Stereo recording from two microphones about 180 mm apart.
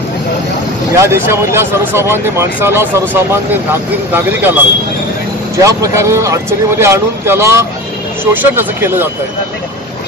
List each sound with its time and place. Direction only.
0.9 s speech: 15° right (ahead or behind)
5.6 s speech: 20° right (ahead or behind)